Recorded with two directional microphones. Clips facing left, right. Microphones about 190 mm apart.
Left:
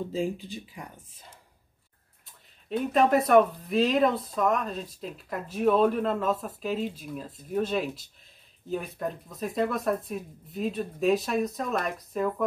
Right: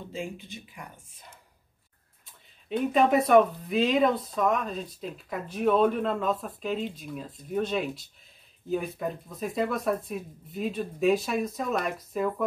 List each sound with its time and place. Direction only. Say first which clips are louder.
0.1 s speech: left 6 dB; 35° left (ahead or behind)
2.7 s speech: even; centre (ahead or behind)